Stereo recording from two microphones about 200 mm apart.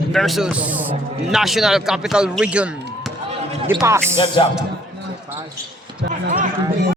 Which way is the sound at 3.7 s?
20° right (ahead or behind).